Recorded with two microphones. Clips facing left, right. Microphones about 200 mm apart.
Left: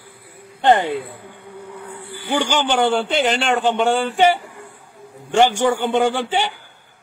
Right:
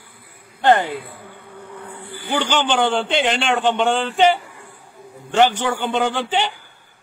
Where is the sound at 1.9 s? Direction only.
10° left (ahead or behind).